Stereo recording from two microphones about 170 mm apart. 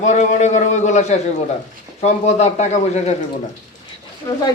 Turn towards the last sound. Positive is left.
turn(degrees=15)  # may be behind; listen again after turning